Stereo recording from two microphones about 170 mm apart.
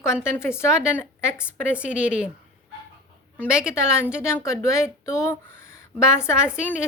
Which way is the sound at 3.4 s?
5° right (ahead or behind).